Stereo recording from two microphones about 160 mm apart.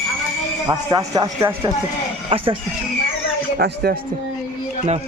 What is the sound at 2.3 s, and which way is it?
Speech, 35° right (ahead or behind).